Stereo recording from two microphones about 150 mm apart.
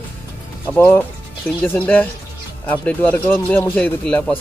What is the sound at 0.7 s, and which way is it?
A man's voice, 15° left (ahead or behind).